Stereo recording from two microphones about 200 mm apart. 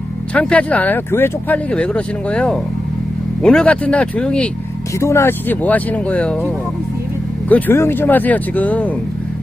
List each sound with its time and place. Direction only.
0.3 s speech: 5° left (ahead or behind)